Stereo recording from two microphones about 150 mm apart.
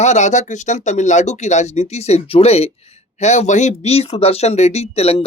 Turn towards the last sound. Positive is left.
turn(degrees=40)  # may be behind; listen again after turning